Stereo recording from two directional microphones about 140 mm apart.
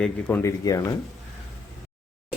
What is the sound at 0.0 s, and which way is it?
Speech, 10° left (ahead or behind).